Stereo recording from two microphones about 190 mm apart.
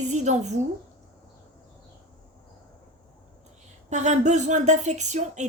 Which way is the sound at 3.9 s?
40° right (ahead or behind).